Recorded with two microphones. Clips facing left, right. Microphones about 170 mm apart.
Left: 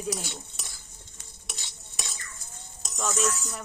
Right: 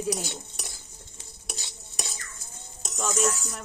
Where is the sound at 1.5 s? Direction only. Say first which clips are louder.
Right 4 dB; 40° right (ahead or behind).